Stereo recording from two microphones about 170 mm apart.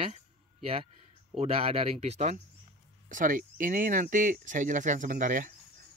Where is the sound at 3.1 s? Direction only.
50° right (ahead or behind).